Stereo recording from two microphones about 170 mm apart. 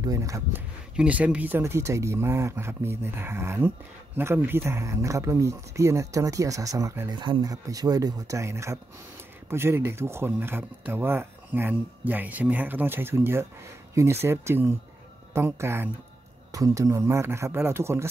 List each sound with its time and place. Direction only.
0.0 s speech: 20° right (ahead or behind)